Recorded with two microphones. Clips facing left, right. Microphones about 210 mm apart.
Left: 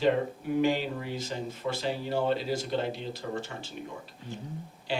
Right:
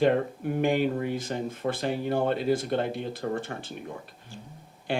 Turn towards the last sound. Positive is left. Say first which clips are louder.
# right 3 dB
turn(degrees=-55)  # may be behind; listen again after turning